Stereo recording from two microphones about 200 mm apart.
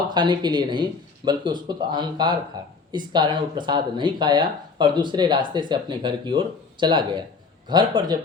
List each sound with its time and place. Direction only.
0.1 s speech: 20° right (ahead or behind)